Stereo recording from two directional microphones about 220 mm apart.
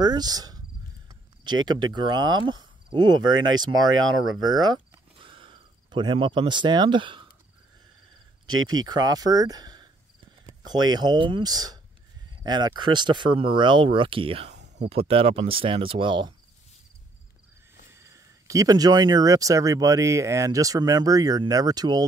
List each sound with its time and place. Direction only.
0.0 s speech: 20° right (ahead or behind)
4.5 s speech: 20° right (ahead or behind)
5.2 s cricket: 25° right (ahead or behind)
8.5 s speech: 20° right (ahead or behind)
17.9 s speech: 15° right (ahead or behind)